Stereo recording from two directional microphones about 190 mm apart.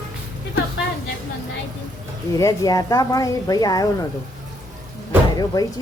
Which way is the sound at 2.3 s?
15° left (ahead or behind).